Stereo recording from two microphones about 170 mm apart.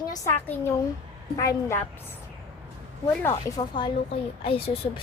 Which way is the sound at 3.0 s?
15° left (ahead or behind).